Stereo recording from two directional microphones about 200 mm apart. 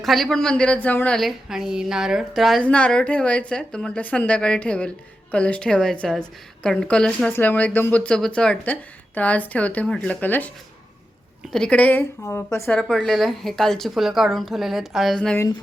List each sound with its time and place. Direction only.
0.0 s a woman's voice: centre (ahead or behind)
11.5 s a woman's voice: 5° left (ahead or behind)
12.6 s a woman's voice: centre (ahead or behind)